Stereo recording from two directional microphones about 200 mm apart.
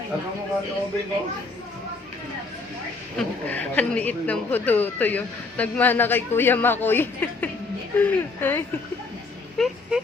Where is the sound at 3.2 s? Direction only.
5° left (ahead or behind).